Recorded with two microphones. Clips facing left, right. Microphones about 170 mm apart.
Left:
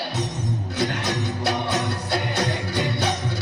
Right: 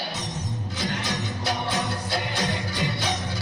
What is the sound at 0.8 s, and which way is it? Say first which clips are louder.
Music: left 4 dB; 65° left (ahead or behind).